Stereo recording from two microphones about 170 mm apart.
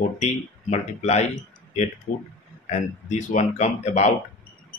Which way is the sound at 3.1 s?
45° left (ahead or behind).